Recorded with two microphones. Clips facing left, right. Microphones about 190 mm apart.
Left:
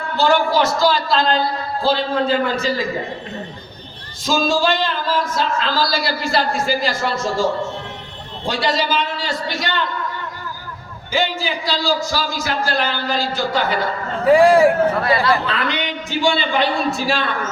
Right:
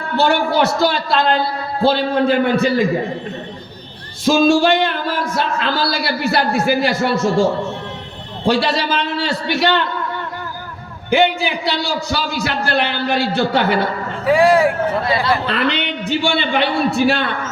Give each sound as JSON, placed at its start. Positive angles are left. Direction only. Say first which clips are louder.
{"t": 0.2, "sound": "speech", "louder": "right 1 dB", "side_deg": -60}
{"t": 4.3, "sound": "speech", "louder": "right 5 dB", "side_deg": -60}
{"t": 11.1, "sound": "speech", "louder": "right 6 dB", "side_deg": -65}
{"t": 14.4, "sound": "speech", "louder": "even", "side_deg": 10}
{"t": 15.4, "sound": "speech", "louder": "right 3 dB", "side_deg": -65}